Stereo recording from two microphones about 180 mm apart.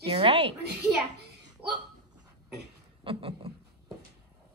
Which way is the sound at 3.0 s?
30° right (ahead or behind).